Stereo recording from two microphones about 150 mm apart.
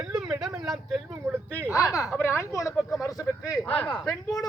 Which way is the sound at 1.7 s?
20° left (ahead or behind).